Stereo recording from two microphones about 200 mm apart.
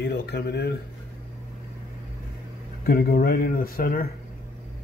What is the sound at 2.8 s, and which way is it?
Speech, 50° left (ahead or behind).